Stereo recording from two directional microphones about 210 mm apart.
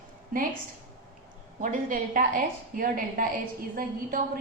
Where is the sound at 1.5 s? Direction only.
40° right (ahead or behind).